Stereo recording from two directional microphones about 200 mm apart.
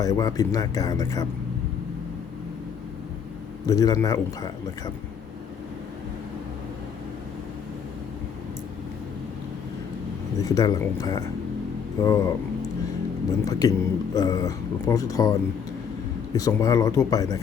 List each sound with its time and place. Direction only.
0.0 s a man's voice: 15° left (ahead or behind)
3.7 s a man's voice: 20° left (ahead or behind)
10.4 s a man's voice: 15° left (ahead or behind)
13.4 s a man's voice: 15° left (ahead or behind)